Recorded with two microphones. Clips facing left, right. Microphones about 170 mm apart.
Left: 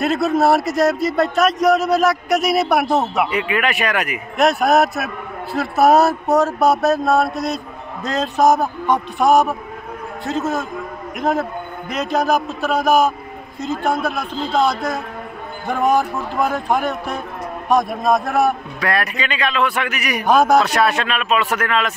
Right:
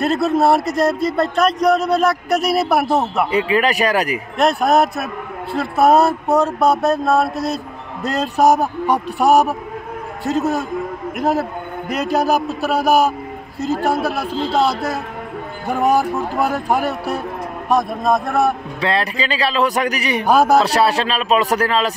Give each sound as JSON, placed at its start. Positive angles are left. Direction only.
{"t": 0.0, "sound": "speech", "side_deg": 0}
{"t": 3.3, "sound": "a man's voice", "side_deg": -30}
{"t": 4.4, "sound": "speech", "side_deg": 0}
{"t": 18.8, "sound": "a man's voice", "side_deg": -25}
{"t": 20.2, "sound": "speech", "side_deg": -5}
{"t": 20.5, "sound": "a man's voice", "side_deg": -30}